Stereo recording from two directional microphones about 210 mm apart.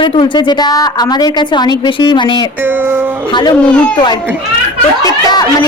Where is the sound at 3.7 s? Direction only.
5° left (ahead or behind).